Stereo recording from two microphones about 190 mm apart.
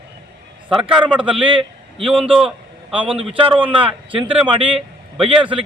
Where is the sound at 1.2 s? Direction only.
25° right (ahead or behind).